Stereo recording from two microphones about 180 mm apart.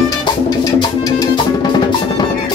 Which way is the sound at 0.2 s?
25° left (ahead or behind).